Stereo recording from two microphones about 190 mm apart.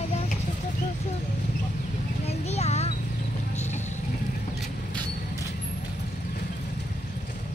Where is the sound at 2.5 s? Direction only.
35° left (ahead or behind).